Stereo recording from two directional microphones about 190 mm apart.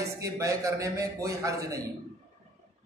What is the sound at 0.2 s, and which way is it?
A man's voice, 15° right (ahead or behind).